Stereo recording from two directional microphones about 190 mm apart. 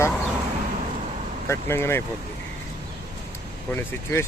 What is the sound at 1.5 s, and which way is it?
Speech, 15° left (ahead or behind).